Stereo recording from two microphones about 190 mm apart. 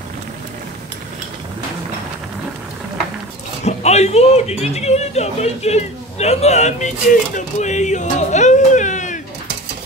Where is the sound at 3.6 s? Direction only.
35° left (ahead or behind).